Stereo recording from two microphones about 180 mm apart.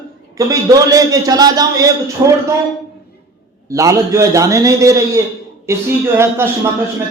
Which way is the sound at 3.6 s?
15° right (ahead or behind).